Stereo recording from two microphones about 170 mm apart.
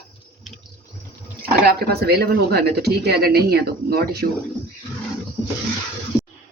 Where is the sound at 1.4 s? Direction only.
65° right (ahead or behind).